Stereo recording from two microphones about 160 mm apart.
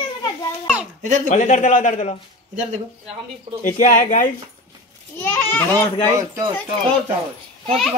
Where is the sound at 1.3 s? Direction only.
50° left (ahead or behind).